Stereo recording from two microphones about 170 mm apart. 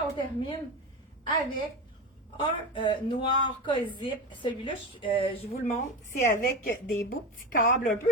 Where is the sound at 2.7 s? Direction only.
30° left (ahead or behind).